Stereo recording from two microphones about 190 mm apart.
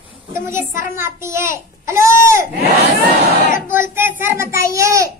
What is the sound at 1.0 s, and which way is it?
A child's voice, 15° right (ahead or behind).